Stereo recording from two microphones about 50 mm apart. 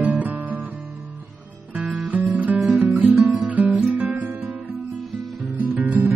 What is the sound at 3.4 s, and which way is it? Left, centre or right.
Guitar, right.